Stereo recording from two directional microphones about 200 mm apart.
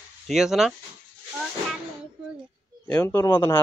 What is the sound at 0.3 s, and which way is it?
Speech, centre (ahead or behind).